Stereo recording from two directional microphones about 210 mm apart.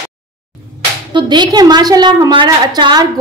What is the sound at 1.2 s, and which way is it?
A woman's voice, 20° right (ahead or behind).